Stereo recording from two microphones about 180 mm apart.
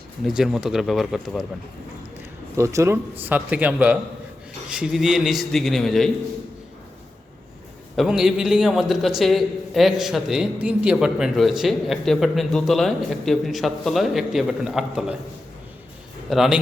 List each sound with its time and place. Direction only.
0.3 s a man's voice: centre (ahead or behind)
2.6 s a man's voice: 15° right (ahead or behind); by 6.1 s centre (ahead or behind)
7.9 s a man's voice: centre (ahead or behind)
16.3 s a man's voice: centre (ahead or behind)